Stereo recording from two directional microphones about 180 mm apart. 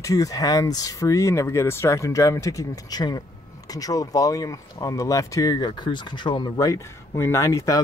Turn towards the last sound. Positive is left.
turn(degrees=15)  # may be behind; listen again after turning